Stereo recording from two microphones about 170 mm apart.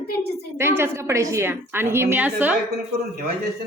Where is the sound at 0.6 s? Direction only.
15° right (ahead or behind).